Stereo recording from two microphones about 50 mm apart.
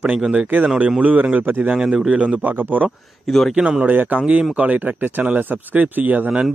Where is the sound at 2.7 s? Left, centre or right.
Right.